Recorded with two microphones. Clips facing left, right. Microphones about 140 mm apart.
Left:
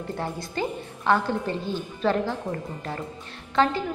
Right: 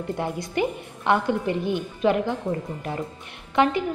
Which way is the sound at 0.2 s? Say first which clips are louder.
Right 4 dB; 20° right (ahead or behind).